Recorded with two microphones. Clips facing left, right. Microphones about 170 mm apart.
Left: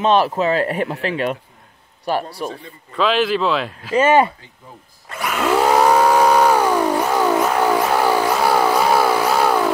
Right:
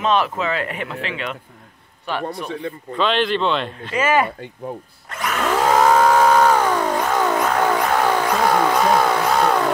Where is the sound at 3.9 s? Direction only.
30° left (ahead or behind).